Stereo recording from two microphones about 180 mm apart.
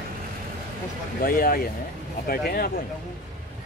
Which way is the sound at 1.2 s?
55° left (ahead or behind).